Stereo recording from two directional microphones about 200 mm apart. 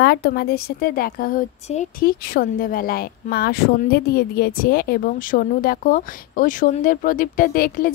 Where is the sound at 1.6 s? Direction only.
35° left (ahead or behind).